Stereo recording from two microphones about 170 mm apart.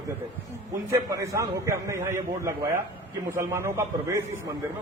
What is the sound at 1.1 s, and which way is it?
A man's voice, 20° right (ahead or behind).